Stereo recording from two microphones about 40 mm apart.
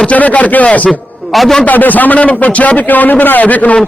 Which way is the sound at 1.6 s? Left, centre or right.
Left.